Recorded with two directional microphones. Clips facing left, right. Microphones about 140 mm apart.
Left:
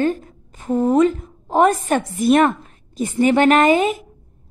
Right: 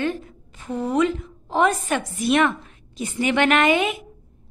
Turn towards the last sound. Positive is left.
turn(degrees=40)  # may be behind; listen again after turning